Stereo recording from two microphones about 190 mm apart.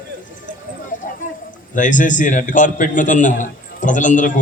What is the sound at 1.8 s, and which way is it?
A man's voice, 40° left (ahead or behind).